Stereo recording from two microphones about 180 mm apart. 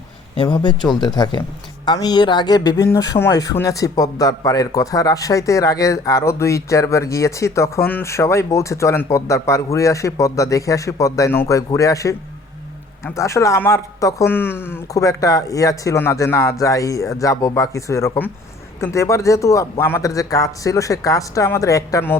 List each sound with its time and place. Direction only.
0.3 s speech: 25° left (ahead or behind)
13.1 s speech: 15° left (ahead or behind)